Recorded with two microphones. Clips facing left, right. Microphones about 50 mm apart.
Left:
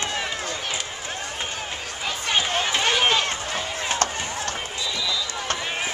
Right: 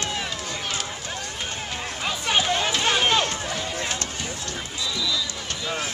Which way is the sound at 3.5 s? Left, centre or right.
Left.